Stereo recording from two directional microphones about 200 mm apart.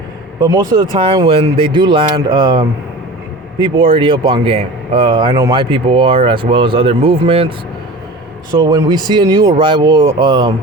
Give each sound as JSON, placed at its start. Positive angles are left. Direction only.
{"t": 0.3, "sound": "speech", "side_deg": -20}
{"t": 8.5, "sound": "speech", "side_deg": -20}